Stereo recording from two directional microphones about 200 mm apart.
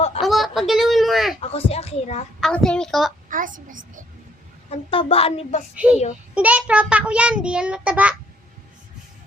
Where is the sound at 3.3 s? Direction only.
40° right (ahead or behind).